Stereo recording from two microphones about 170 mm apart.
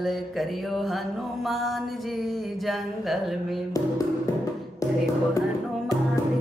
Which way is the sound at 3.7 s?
20° left (ahead or behind).